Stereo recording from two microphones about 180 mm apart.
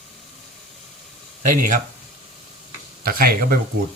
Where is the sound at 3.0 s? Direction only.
55° right (ahead or behind).